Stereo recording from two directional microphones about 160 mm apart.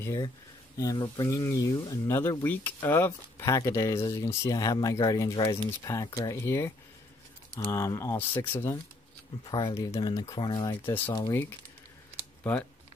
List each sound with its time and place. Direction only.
0.0 s speech: 20° left (ahead or behind)
7.7 s speech: 20° left (ahead or behind)
9.4 s speech: 25° left (ahead or behind)
10.9 s speech: 15° left (ahead or behind)